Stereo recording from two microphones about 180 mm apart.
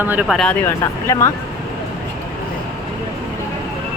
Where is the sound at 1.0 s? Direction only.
15° left (ahead or behind).